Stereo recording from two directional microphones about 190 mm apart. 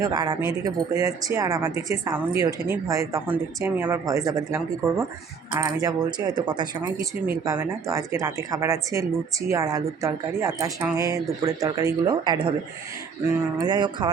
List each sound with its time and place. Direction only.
0.0 s speech: 20° right (ahead or behind)
13.6 s speech: 25° right (ahead or behind)